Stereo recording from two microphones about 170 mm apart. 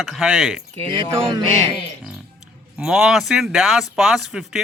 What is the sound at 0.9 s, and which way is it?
Music, 25° right (ahead or behind).